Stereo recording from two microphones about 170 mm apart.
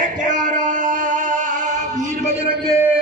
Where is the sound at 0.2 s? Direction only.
50° right (ahead or behind).